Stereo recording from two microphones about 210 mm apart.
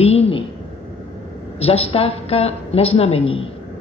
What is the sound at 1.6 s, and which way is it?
A woman's voice, 30° left (ahead or behind).